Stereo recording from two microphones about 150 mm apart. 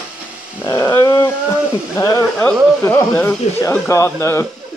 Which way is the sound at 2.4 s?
10° left (ahead or behind).